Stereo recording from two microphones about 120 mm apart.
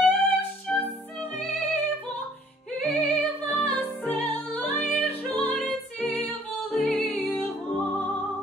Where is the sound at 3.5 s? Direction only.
10° left (ahead or behind).